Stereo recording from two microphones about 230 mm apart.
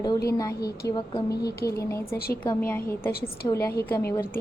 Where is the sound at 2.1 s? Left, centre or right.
Left.